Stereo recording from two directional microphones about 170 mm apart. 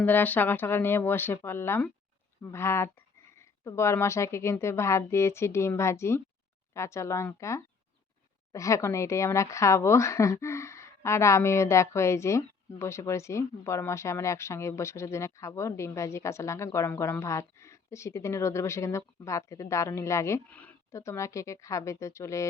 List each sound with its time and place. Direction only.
0.0 s speech: 10° left (ahead or behind)